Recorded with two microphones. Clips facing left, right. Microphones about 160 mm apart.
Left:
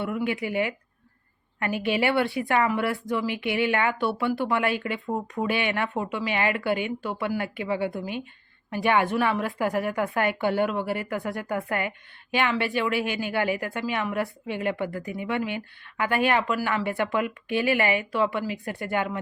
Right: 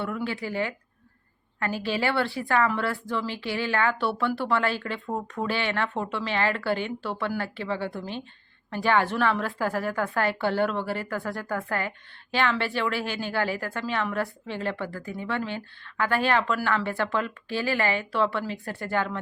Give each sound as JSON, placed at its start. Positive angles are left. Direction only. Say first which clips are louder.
{"t": 0.3, "sound": "a woman's voice", "louder": "left 3 dB", "side_deg": 15}
{"t": 1.8, "sound": "a woman's voice", "louder": "left 3 dB", "side_deg": 20}